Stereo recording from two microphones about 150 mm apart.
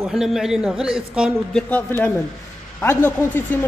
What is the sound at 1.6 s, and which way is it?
Speech, 10° left (ahead or behind).